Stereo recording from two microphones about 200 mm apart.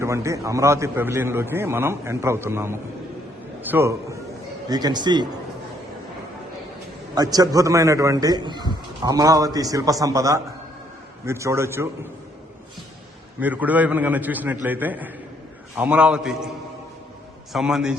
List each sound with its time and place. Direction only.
0.0 s a man's voice: 15° right (ahead or behind)
7.2 s a man's voice: 20° right (ahead or behind)
13.4 s a man's voice: 10° right (ahead or behind)
17.5 s a man's voice: 5° right (ahead or behind)